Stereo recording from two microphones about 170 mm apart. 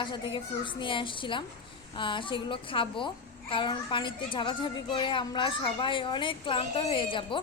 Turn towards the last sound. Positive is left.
turn(degrees=30)  # may be behind; listen again after turning